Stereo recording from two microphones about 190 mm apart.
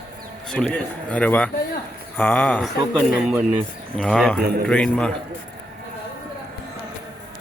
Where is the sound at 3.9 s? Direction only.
5° left (ahead or behind).